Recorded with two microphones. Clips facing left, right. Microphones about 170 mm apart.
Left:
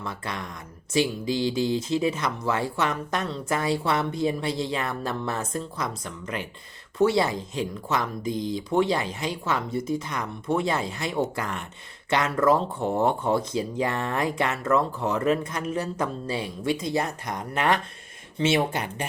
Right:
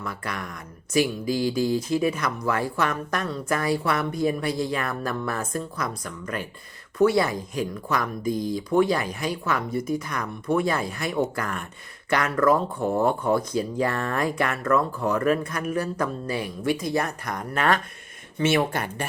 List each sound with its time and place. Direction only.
0.0 s speech: 25° left (ahead or behind)